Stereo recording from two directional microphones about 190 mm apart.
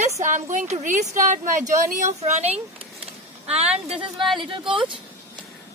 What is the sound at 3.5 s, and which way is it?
Speech, 35° right (ahead or behind).